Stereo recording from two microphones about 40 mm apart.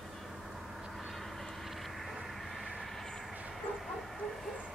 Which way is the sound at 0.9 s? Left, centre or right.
Centre.